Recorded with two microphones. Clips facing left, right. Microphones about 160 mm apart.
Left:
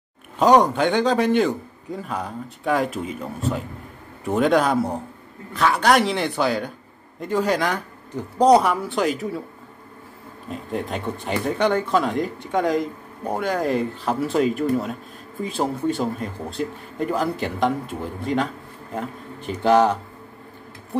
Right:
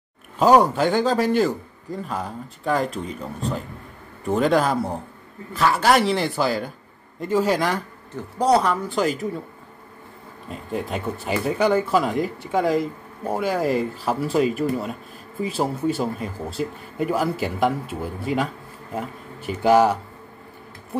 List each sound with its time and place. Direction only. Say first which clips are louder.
0.4 s speech: even; 5° right (ahead or behind)
8.1 s speech: left 4 dB; 15° left (ahead or behind)
8.8 s speech: even; centre (ahead or behind)
10.5 s speech: even; centre (ahead or behind)